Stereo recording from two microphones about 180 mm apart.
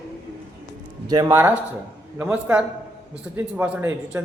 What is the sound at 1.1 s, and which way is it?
Speech, 25° right (ahead or behind).